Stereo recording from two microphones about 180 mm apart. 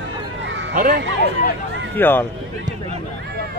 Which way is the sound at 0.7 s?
50° right (ahead or behind).